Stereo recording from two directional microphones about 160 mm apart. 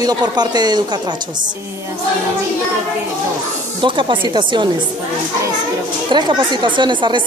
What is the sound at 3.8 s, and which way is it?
Speech, 30° right (ahead or behind).